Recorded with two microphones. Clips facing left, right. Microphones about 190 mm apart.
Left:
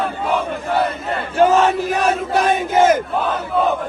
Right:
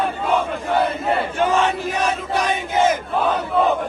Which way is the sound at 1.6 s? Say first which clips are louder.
Left 4 dB; 50° left (ahead or behind).